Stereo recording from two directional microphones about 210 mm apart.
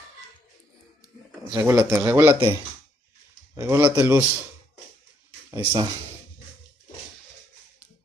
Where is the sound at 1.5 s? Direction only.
15° right (ahead or behind).